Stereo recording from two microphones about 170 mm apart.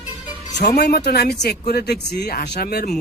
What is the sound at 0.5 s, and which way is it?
Speech, 75° left (ahead or behind).